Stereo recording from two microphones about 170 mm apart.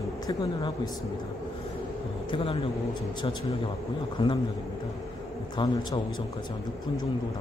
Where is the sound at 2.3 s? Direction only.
30° left (ahead or behind).